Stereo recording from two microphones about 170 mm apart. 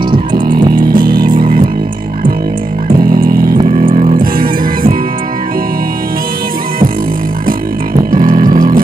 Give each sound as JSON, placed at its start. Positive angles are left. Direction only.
{"t": 0.9, "sound": "music", "side_deg": -55}
{"t": 3.0, "sound": "music", "side_deg": -60}
{"t": 3.9, "sound": "music", "side_deg": -45}
{"t": 8.1, "sound": "a sound", "side_deg": -55}